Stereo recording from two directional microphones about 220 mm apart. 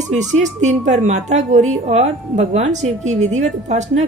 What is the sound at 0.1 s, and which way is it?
Speech, 30° right (ahead or behind).